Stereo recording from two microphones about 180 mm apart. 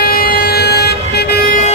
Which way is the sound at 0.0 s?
55° left (ahead or behind).